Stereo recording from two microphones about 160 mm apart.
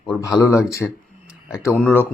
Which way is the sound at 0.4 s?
15° left (ahead or behind).